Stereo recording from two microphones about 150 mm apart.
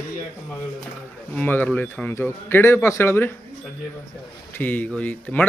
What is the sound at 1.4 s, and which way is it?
Speech, 10° left (ahead or behind).